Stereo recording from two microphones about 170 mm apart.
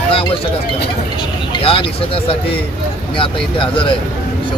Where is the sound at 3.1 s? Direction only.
30° left (ahead or behind).